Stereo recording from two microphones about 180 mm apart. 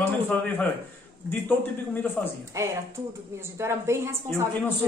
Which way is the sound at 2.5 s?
15° right (ahead or behind).